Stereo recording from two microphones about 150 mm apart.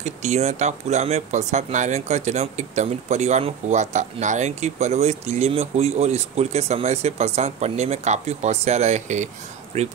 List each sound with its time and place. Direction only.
0.0 s speech: 50° right (ahead or behind)